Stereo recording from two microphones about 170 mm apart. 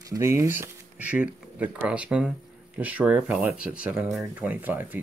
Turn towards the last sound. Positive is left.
turn(degrees=-10)  # may be behind; listen again after turning